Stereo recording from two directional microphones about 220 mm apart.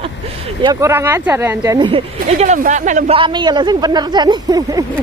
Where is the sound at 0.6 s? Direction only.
15° right (ahead or behind).